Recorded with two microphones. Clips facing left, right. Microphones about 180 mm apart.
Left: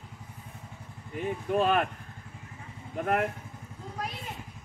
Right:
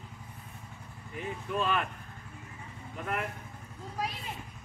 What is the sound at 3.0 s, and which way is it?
Speech, 60° left (ahead or behind).